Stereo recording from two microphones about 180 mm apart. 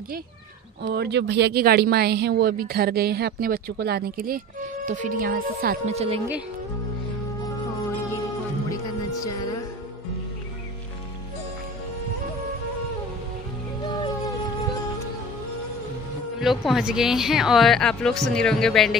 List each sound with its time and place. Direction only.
0.8 s speech: 65° right (ahead or behind)
4.8 s speech: 45° right (ahead or behind)
5.9 s speech: 35° right (ahead or behind)
8.1 s music: 15° left (ahead or behind)
16.3 s speech: centre (ahead or behind)